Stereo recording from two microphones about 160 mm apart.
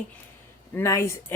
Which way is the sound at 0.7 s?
20° left (ahead or behind).